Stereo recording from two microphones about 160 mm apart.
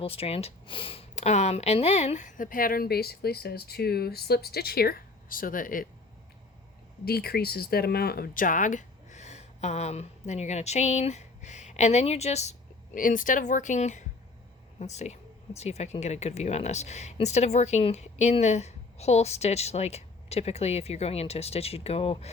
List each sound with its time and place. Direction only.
0.0 s speech: 35° left (ahead or behind); by 5.9 s 60° left (ahead or behind)
7.0 s speech: 75° left (ahead or behind); by 22.3 s 40° left (ahead or behind)